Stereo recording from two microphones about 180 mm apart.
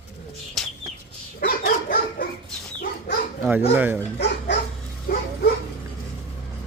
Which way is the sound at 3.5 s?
10° right (ahead or behind).